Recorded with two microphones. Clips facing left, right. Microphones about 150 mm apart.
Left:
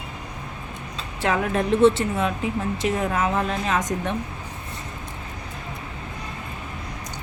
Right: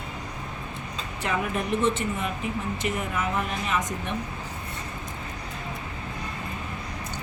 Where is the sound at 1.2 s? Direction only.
90° left.